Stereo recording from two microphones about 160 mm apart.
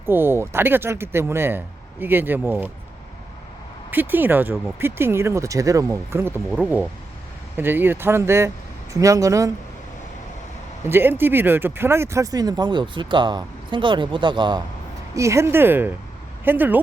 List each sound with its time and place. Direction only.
0.0 s speech: 15° right (ahead or behind)
3.9 s speech: 10° right (ahead or behind)
10.8 s speech: 15° right (ahead or behind); by 14.6 s 30° right (ahead or behind)
15.1 s speech: 20° right (ahead or behind)